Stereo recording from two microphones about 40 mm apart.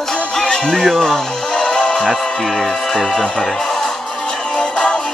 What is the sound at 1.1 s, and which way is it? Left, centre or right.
Music, centre.